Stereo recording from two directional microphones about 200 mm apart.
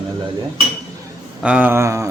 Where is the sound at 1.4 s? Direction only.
10° right (ahead or behind).